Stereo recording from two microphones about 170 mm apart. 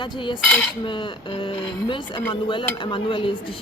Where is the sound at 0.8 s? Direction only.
30° left (ahead or behind).